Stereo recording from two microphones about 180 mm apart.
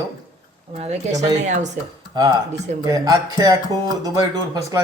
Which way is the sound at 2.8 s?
20° right (ahead or behind).